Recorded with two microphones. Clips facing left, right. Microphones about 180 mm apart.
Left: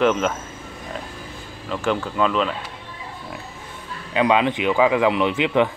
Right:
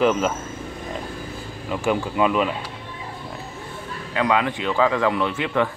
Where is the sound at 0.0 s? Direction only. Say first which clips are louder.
Even; 5° right (ahead or behind).